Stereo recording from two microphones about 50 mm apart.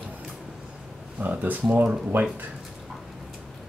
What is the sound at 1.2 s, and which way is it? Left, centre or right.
Speech, right.